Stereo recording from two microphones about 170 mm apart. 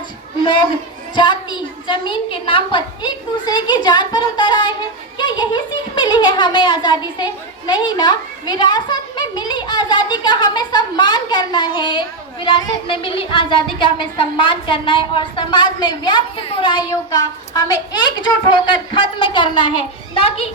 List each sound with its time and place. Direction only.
1.1 s a child's voice: 25° left (ahead or behind)